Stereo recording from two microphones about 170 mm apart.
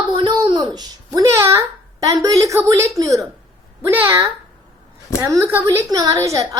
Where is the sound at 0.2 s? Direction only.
30° right (ahead or behind).